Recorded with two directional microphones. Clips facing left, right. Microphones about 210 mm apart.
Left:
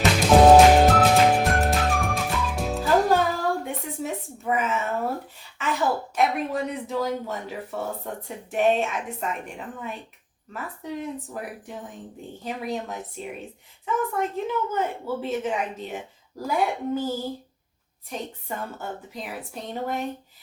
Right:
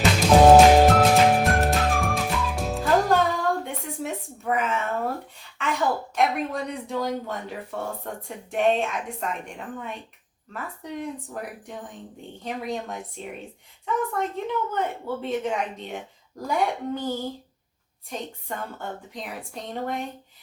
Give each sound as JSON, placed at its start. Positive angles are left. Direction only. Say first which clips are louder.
{"t": 0.2, "sound": "music", "louder": "even", "side_deg": 0}
{"t": 3.6, "sound": "a sound", "louder": "left 1 dB", "side_deg": 5}
{"t": 5.5, "sound": "a woman's voice", "louder": "even", "side_deg": 5}
{"t": 10.5, "sound": "a woman's voice", "louder": "left 1 dB", "side_deg": 5}